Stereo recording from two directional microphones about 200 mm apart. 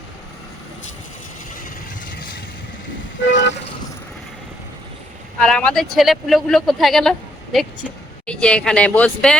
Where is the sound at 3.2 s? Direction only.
65° left (ahead or behind).